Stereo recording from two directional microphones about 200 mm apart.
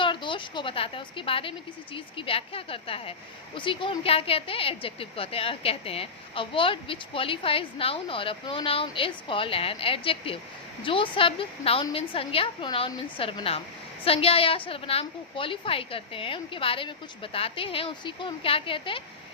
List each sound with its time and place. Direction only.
0.0 s a woman's voice: 25° left (ahead or behind)